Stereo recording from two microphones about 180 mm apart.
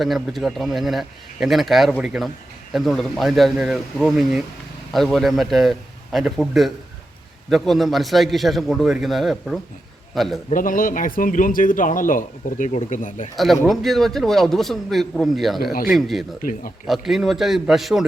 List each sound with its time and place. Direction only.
0.0 s a man's voice: centre (ahead or behind)
10.5 s a man's voice: 50° left (ahead or behind)
13.3 s a man's voice: centre (ahead or behind)
16.4 s a man's voice: 50° left (ahead or behind)
16.8 s a man's voice: centre (ahead or behind)